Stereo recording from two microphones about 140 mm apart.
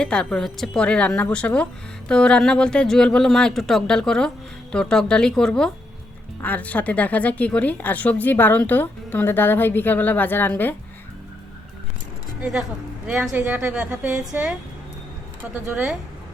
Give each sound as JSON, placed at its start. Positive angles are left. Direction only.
{"t": 0.0, "sound": "a woman's voice", "side_deg": 5}
{"t": 12.4, "sound": "a woman's voice", "side_deg": -5}
{"t": 15.6, "sound": "a woman's voice", "side_deg": -10}